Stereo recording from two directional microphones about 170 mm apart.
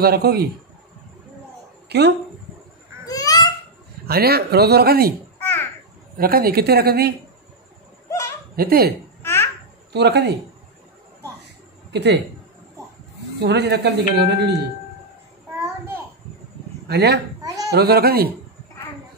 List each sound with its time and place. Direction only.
0.0 s speech: 65° right (ahead or behind)
1.9 s speech: 75° right (ahead or behind)
3.1 s babbling: 20° left (ahead or behind)
4.1 s speech: 65° right (ahead or behind)
5.4 s a sound: 15° left (ahead or behind)
6.1 s speech: 60° right (ahead or behind)
8.1 s laughter: 15° left (ahead or behind)
8.5 s speech: 60° right (ahead or behind)
9.2 s babbling: 15° left (ahead or behind)
9.9 s speech: 80° right
11.9 s speech: 85° right
13.4 s speech: 85° right
16.8 s speech: 75° right (ahead or behind)